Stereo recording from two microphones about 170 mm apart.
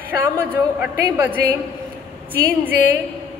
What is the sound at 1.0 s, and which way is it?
Speech, 20° right (ahead or behind).